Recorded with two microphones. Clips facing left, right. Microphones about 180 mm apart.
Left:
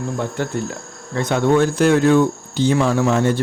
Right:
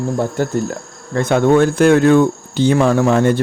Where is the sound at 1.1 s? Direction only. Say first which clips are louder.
Right 4 dB; 50° right (ahead or behind).